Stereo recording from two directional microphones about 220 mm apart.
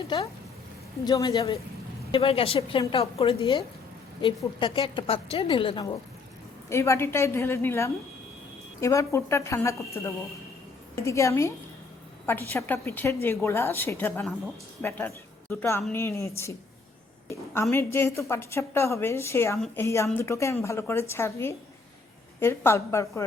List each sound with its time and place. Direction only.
1.0 s a woman's voice: 15° left (ahead or behind)